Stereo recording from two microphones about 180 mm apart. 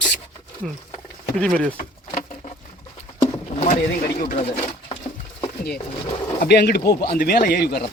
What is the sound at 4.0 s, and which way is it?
Speech, 55° left (ahead or behind).